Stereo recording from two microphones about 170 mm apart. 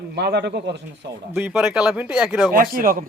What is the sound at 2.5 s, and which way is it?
Speech, 60° right (ahead or behind).